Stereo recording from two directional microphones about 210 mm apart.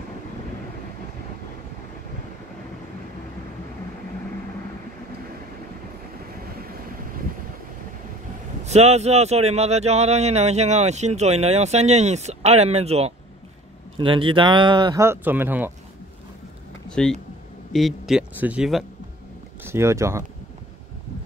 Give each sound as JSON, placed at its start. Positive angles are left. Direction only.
{"t": 8.6, "sound": "speech", "side_deg": -30}
{"t": 16.9, "sound": "a man's voice", "side_deg": 5}
{"t": 19.6, "sound": "speech", "side_deg": -10}